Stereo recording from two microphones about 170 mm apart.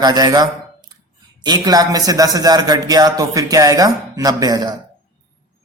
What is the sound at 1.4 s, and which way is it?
Speech, 25° right (ahead or behind).